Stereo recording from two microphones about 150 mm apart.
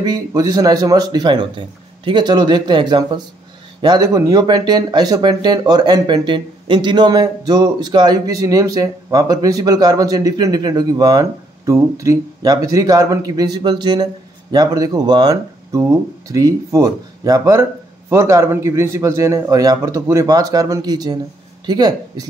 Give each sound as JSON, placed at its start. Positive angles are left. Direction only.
{"t": 0.0, "sound": "speech", "side_deg": -25}